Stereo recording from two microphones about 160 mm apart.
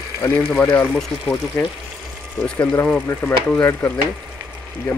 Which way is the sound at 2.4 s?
10° left (ahead or behind).